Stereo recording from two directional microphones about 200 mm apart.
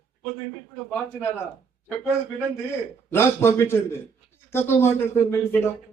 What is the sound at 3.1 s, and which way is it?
Speech, 10° left (ahead or behind).